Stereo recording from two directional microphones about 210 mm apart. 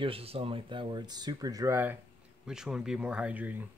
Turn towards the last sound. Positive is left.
turn(degrees=-10)  # may be behind; listen again after turning